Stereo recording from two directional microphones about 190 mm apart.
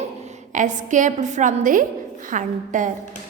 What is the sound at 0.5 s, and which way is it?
A woman's voice, 40° right (ahead or behind).